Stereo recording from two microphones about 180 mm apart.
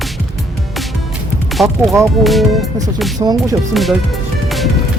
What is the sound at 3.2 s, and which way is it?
Speech, 20° right (ahead or behind).